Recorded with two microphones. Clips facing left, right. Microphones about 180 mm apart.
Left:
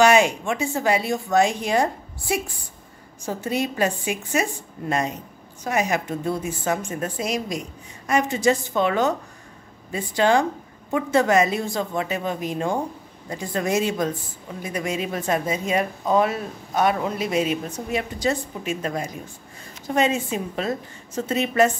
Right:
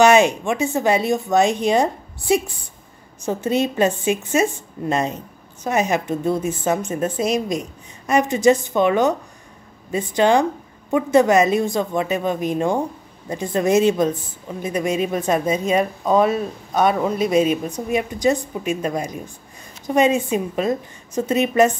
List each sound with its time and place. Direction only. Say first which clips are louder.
0.0 s a woman's voice: right 3 dB; 20° right (ahead or behind)